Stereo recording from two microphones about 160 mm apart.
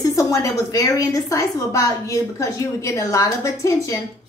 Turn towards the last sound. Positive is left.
turn(degrees=20)  # may be behind; listen again after turning